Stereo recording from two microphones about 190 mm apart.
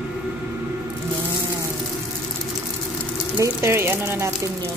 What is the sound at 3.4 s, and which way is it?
Speech, 15° right (ahead or behind).